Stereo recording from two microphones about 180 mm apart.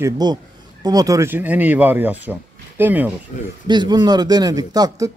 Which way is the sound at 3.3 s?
40° left (ahead or behind).